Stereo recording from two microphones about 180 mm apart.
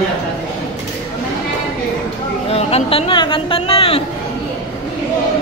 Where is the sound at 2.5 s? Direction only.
35° left (ahead or behind).